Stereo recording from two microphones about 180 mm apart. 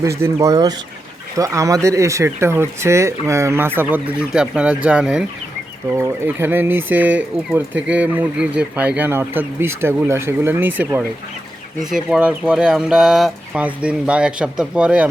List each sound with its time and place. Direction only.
0.0 s speech: 15° right (ahead or behind)